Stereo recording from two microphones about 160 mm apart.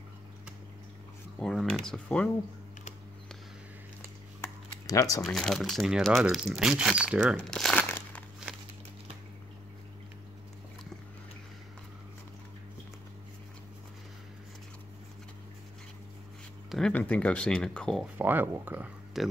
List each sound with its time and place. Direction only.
1.4 s speech: centre (ahead or behind)
4.4 s a sound: 20° left (ahead or behind)
5.2 s speech: centre (ahead or behind)
16.7 s speech: 5° left (ahead or behind)
18.1 s speech: 10° right (ahead or behind)
19.2 s speech: centre (ahead or behind)